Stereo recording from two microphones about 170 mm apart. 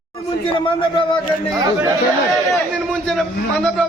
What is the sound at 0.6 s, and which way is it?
Speech, 30° left (ahead or behind).